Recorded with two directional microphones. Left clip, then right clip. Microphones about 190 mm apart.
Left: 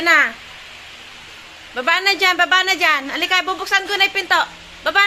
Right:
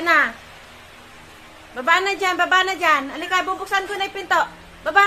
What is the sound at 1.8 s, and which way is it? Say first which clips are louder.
A woman's voice: left 2 dB; 20° left (ahead or behind).